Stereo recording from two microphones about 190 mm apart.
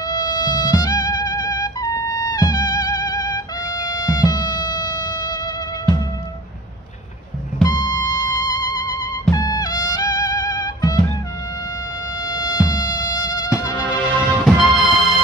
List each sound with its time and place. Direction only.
0.0 s music: 20° left (ahead or behind)
7.6 s music: 20° left (ahead or behind)
12.3 s mosquito: 20° left (ahead or behind)
13.8 s music: 5° right (ahead or behind)